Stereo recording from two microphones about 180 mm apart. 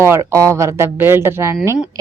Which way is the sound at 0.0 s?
15° right (ahead or behind).